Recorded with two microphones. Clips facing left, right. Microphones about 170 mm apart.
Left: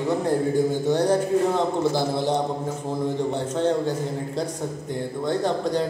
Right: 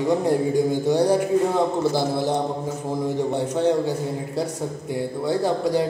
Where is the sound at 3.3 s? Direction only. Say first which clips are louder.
Right 4 dB; 10° right (ahead or behind).